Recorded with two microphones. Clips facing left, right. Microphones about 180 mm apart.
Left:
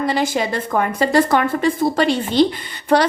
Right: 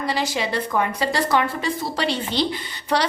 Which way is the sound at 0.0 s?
50° left (ahead or behind).